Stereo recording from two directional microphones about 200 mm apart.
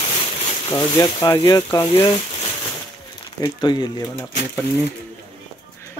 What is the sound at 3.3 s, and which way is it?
Speech, 20° left (ahead or behind).